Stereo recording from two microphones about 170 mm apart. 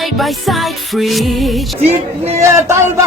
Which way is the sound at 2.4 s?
15° right (ahead or behind).